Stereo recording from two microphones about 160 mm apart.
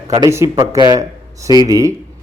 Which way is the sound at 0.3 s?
20° right (ahead or behind).